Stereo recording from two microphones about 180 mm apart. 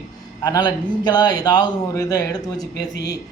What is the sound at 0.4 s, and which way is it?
A man's voice, 20° left (ahead or behind).